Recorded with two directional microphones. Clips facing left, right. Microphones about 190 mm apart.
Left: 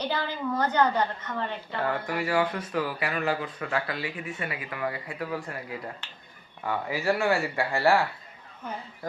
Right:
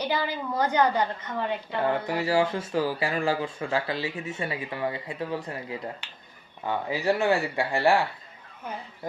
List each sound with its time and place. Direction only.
0.0 s a woman's voice: 10° right (ahead or behind)